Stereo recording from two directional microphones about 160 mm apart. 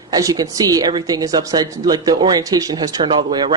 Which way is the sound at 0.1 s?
25° right (ahead or behind).